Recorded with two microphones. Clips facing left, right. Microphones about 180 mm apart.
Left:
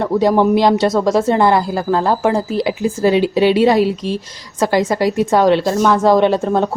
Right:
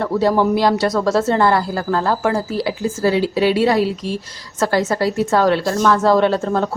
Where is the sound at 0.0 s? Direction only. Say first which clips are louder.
Left 3 dB; 15° left (ahead or behind).